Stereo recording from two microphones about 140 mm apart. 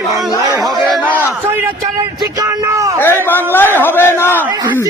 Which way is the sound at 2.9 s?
15° left (ahead or behind).